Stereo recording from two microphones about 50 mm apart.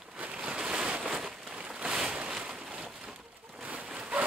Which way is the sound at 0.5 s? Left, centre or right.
Centre.